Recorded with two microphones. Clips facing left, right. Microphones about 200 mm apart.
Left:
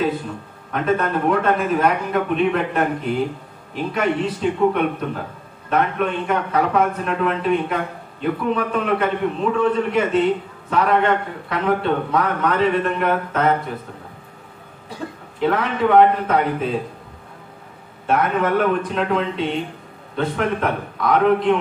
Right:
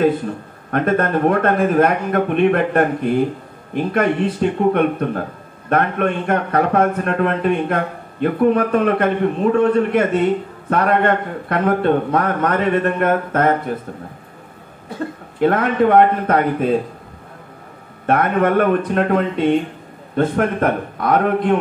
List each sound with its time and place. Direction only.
0.7 s a man's voice: 55° right (ahead or behind)
15.4 s a man's voice: 50° right (ahead or behind)
18.0 s a man's voice: 55° right (ahead or behind)